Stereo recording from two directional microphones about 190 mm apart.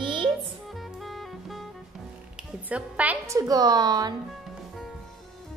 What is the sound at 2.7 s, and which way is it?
A woman's voice, 5° right (ahead or behind).